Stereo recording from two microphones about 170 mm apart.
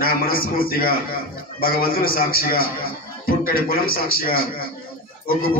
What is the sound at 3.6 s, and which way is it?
Speech, 60° left (ahead or behind).